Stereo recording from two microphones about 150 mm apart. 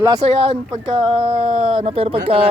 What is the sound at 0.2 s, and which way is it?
Speech, 45° right (ahead or behind).